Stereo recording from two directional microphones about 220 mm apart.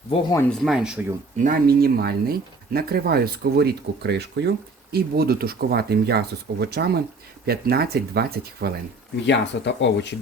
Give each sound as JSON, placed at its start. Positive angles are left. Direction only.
{"t": 0.6, "sound": "speech", "side_deg": 0}
{"t": 1.4, "sound": "speech", "side_deg": -40}
{"t": 9.2, "sound": "speech", "side_deg": 55}